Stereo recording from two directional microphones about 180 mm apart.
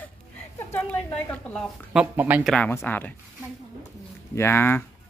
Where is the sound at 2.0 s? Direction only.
10° right (ahead or behind).